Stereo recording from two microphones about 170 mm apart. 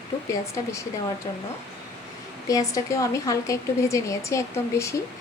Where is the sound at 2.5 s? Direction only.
20° left (ahead or behind).